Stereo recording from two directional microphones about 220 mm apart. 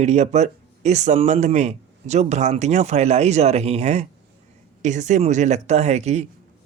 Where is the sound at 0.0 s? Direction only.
30° right (ahead or behind).